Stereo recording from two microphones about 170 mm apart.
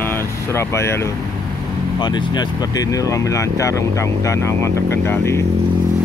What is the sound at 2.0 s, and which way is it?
Speech, 25° left (ahead or behind).